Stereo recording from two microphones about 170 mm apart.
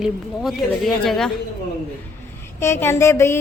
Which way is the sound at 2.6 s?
15° left (ahead or behind).